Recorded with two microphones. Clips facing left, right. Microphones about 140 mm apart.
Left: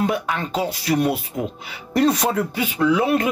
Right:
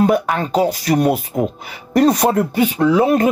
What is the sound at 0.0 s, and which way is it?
Speech, 45° right (ahead or behind).